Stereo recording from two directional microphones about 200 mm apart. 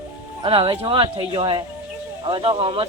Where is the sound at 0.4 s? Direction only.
25° right (ahead or behind).